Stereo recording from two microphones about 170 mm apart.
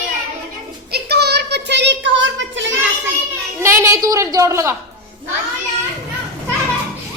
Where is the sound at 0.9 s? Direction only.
70° right (ahead or behind); by 2.7 s 90° right.